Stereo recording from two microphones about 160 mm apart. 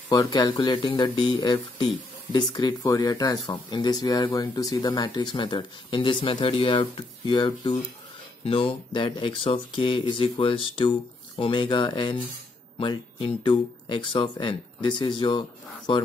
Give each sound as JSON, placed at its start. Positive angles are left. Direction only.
{"t": 0.1, "sound": "speech", "side_deg": 25}